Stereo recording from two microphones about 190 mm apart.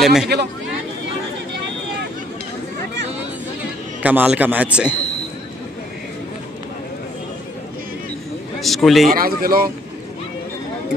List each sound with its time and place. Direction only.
0.0 s speech: centre (ahead or behind)
4.0 s a man's voice: 10° right (ahead or behind)
8.5 s a man's voice: centre (ahead or behind)
9.1 s a man's voice: 50° right (ahead or behind)